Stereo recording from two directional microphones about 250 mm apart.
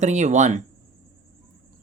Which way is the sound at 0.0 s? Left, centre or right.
Right.